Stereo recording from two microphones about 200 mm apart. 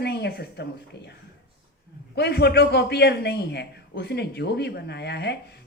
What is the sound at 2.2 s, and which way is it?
Speech, 55° left (ahead or behind).